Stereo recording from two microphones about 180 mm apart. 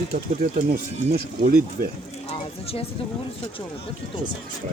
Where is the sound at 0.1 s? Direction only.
55° right (ahead or behind).